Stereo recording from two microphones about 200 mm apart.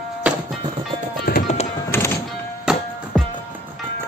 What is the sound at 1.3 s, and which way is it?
Music, 50° left (ahead or behind).